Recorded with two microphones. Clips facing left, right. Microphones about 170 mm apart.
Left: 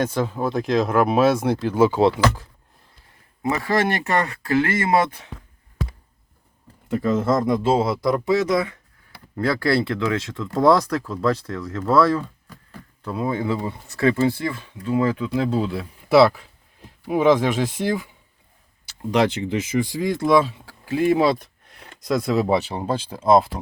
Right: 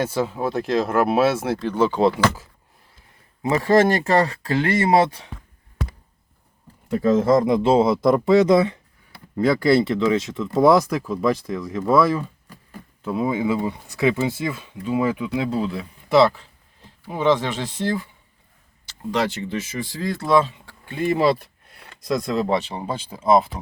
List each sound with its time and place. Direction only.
0.0 s speech: 10° right (ahead or behind)
3.5 s speech: 30° right (ahead or behind)
7.2 s a man's voice: 15° right (ahead or behind)
15.3 s speech: centre (ahead or behind)
19.1 s speech: 15° left (ahead or behind); by 23.5 s centre (ahead or behind)